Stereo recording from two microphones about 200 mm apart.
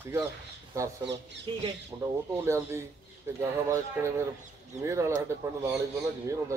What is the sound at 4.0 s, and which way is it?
A man's voice, 10° right (ahead or behind).